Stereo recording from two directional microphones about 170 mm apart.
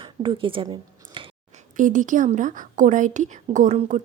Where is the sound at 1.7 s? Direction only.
50° right (ahead or behind).